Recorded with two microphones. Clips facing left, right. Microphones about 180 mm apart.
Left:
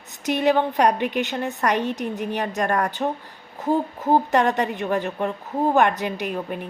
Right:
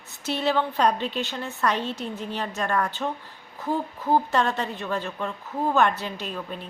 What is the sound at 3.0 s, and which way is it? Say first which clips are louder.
Speech: left 4 dB; 35° left (ahead or behind).